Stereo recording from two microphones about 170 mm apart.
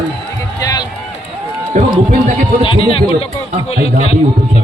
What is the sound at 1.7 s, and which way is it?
Speech, 45° right (ahead or behind).